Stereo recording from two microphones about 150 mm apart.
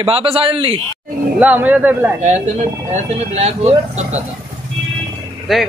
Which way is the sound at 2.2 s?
50° right (ahead or behind).